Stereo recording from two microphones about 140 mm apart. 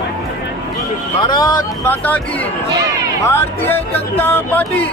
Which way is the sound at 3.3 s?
15° left (ahead or behind).